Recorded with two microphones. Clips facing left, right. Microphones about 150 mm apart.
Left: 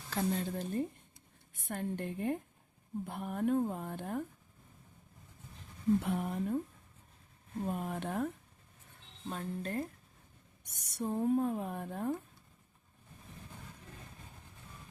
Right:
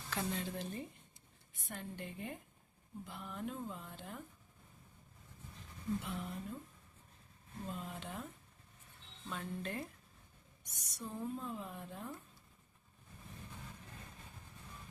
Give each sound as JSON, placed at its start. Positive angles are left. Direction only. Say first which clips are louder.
{"t": 0.1, "sound": "speech", "louder": "left 6 dB", "side_deg": 40}
{"t": 6.0, "sound": "speech", "louder": "left 9 dB", "side_deg": 60}
{"t": 7.6, "sound": "speech", "louder": "left 8 dB", "side_deg": 55}
{"t": 9.3, "sound": "speech", "louder": "left 5 dB", "side_deg": 40}
{"t": 10.6, "sound": "speech", "louder": "left 9 dB", "side_deg": 60}